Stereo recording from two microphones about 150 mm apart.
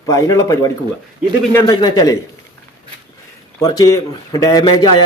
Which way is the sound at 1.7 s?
25° left (ahead or behind).